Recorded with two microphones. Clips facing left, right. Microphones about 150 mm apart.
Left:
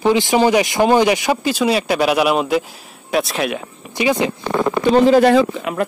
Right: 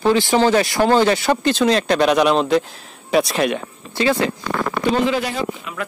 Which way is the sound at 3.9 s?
15° left (ahead or behind).